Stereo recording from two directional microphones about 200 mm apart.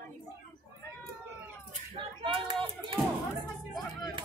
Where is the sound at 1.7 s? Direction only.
25° right (ahead or behind).